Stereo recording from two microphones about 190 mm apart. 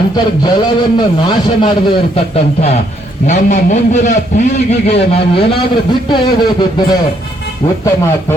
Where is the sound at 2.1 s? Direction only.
35° left (ahead or behind).